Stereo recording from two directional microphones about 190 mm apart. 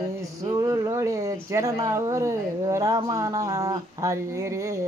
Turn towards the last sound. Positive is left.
turn(degrees=-15)  # may be behind; listen again after turning